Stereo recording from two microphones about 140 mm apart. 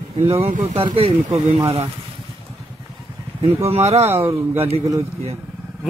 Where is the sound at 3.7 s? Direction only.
50° right (ahead or behind).